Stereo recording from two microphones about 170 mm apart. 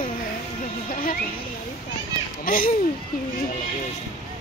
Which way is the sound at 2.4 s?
55° left (ahead or behind).